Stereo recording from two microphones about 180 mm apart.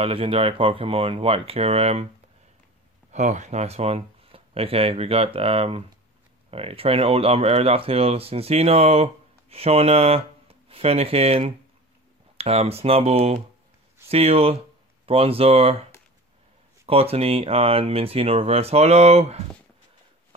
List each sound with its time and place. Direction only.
0.0 s speech: 30° right (ahead or behind)
3.1 s speech: 40° right (ahead or behind)